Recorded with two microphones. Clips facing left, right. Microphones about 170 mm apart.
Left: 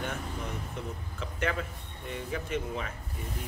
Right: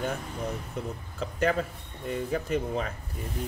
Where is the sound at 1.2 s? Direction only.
40° right (ahead or behind).